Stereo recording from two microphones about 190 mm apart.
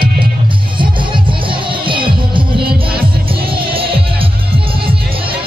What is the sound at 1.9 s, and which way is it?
Music, 25° right (ahead or behind).